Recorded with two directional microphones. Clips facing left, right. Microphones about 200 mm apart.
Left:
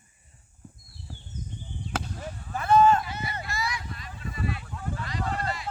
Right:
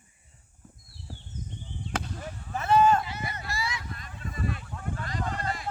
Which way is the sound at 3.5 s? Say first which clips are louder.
Left 2 dB; 30° right (ahead or behind).